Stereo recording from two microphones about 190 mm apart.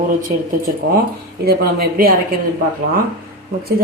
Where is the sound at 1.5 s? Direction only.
50° right (ahead or behind).